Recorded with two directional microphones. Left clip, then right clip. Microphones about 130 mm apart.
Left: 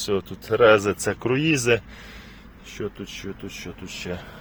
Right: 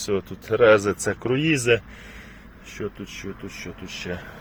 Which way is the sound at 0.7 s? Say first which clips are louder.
Even; 25° left (ahead or behind).